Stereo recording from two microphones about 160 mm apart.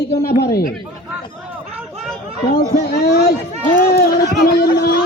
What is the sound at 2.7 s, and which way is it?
Speech, 70° left (ahead or behind).